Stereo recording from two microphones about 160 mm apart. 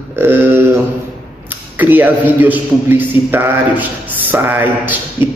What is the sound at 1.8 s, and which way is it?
A man's voice, 10° right (ahead or behind).